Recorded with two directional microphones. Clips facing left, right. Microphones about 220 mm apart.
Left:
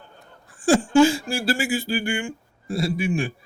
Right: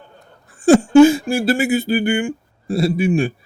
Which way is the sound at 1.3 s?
20° right (ahead or behind).